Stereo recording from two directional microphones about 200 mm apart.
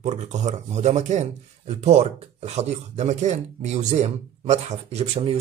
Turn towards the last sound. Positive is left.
turn(degrees=-30)  # may be behind; listen again after turning